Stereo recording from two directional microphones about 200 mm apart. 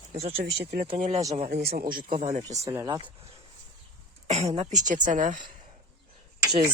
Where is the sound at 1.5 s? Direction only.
55° right (ahead or behind).